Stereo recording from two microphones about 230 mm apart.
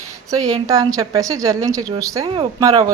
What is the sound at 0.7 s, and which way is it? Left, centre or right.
Speech, centre.